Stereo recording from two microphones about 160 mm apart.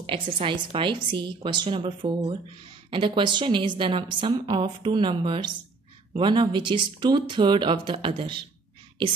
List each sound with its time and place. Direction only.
0.0 s a woman's voice: 35° right (ahead or behind)